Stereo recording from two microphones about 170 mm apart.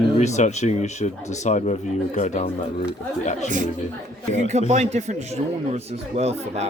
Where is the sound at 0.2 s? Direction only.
45° left (ahead or behind).